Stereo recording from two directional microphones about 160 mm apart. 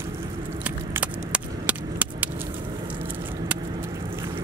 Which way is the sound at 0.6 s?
10° right (ahead or behind).